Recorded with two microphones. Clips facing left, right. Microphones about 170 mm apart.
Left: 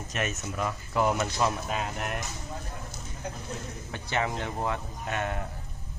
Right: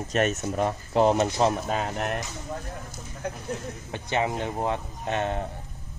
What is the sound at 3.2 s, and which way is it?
Speech, 55° right (ahead or behind).